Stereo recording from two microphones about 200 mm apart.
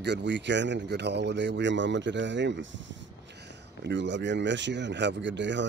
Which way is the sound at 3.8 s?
60° right (ahead or behind).